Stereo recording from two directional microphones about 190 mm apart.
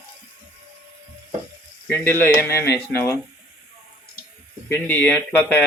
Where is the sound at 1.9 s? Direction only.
10° left (ahead or behind).